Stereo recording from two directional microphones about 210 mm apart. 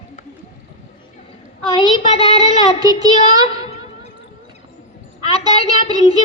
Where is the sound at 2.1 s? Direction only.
30° left (ahead or behind).